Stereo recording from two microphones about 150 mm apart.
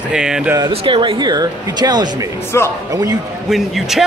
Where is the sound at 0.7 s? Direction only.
35° right (ahead or behind).